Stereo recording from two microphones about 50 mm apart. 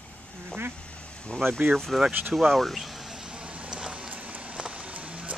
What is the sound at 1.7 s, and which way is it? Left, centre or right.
Speech, centre.